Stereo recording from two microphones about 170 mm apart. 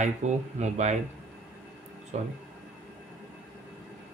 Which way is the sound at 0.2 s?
45° right (ahead or behind).